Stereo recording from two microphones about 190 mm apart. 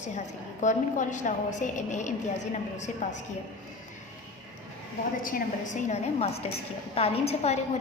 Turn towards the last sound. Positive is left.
turn(degrees=35)  # may be behind; listen again after turning